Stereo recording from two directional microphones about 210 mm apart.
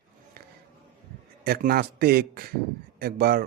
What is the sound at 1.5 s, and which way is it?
Speech, 45° right (ahead or behind).